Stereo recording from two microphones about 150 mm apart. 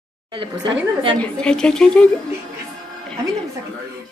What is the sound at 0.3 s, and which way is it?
Speech, 35° right (ahead or behind).